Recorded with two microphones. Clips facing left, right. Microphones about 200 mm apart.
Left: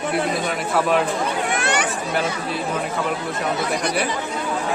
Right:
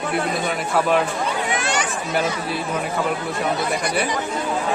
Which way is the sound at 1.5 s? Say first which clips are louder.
Left 1 dB; 60° left (ahead or behind).